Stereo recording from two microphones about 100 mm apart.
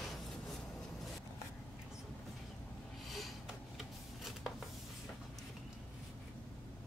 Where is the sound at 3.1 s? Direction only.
Centre (ahead or behind).